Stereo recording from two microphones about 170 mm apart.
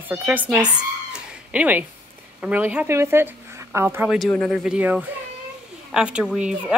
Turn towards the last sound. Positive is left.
turn(degrees=-5)  # may be behind; listen again after turning